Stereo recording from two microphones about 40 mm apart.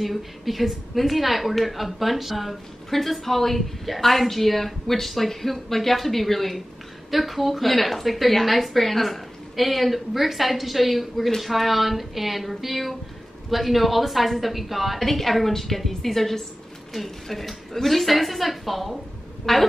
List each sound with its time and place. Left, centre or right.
0.0 s a woman's voice: centre